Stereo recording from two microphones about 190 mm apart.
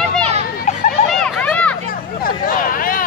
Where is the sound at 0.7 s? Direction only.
35° left (ahead or behind).